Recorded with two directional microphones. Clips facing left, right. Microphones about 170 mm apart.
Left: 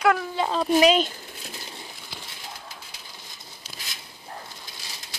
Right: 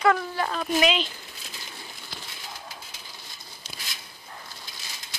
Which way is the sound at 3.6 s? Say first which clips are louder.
Right 1 dB; 5° left (ahead or behind).